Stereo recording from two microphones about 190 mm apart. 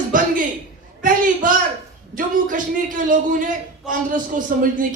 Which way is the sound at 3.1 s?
45° right (ahead or behind).